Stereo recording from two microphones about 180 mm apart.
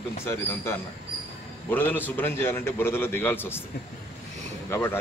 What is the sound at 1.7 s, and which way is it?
Speech, 10° left (ahead or behind).